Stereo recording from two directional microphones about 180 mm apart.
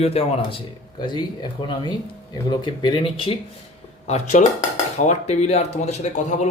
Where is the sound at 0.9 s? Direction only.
25° left (ahead or behind).